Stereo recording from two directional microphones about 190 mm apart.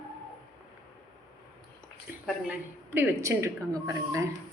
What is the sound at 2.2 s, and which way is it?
A woman's voice, 10° right (ahead or behind).